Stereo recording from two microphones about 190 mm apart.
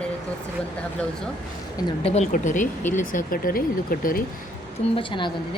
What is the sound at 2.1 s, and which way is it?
Speech, 40° left (ahead or behind).